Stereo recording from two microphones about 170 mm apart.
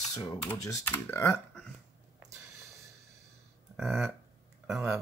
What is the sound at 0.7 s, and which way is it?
Speech, 15° left (ahead or behind).